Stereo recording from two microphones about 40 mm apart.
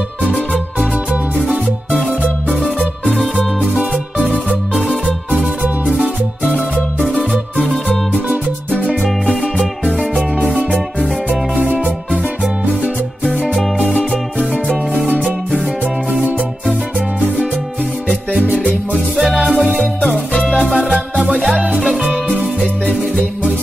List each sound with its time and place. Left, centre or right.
0.2 s music: left
1.5 s music: right
5.4 s music: right
7.6 s music: centre
15.1 s music: centre
19.8 s music: left
20.6 s music: centre
22.6 s music: left